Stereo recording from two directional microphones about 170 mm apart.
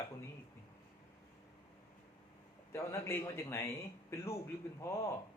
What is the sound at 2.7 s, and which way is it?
Speech, 15° left (ahead or behind).